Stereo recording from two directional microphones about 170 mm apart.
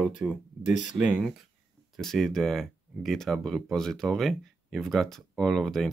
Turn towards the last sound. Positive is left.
turn(degrees=0)  # may be behind; listen again after turning